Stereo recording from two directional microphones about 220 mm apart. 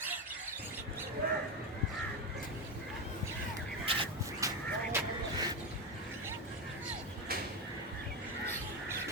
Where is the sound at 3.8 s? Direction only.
20° right (ahead or behind).